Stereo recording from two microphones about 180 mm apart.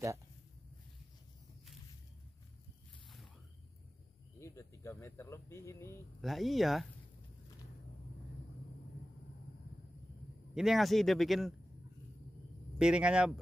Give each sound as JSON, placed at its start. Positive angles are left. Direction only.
{"t": 4.4, "sound": "speech", "side_deg": 15}
{"t": 6.2, "sound": "a man's voice", "side_deg": 0}
{"t": 10.5, "sound": "a man's voice", "side_deg": 0}
{"t": 12.7, "sound": "a man's voice", "side_deg": -5}